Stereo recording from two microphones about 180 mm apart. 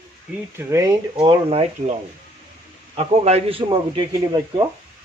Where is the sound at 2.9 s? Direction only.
35° right (ahead or behind).